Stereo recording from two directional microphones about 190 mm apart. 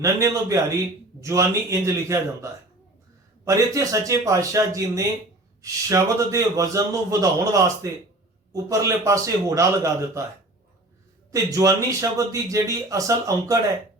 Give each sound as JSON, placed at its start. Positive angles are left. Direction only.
{"t": 0.0, "sound": "a man's voice", "side_deg": -15}
{"t": 11.3, "sound": "a man's voice", "side_deg": -15}